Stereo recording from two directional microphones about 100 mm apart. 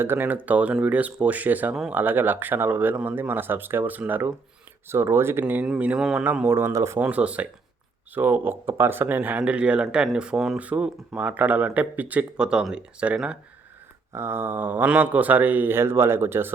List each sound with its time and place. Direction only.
0.0 s speech: 20° right (ahead or behind)
1.7 s speech: 5° right (ahead or behind)
2.0 s speech: 20° right (ahead or behind)
6.5 s speech: 25° right (ahead or behind)
7.0 s speech: 10° right (ahead or behind)
14.1 s speech: 25° right (ahead or behind)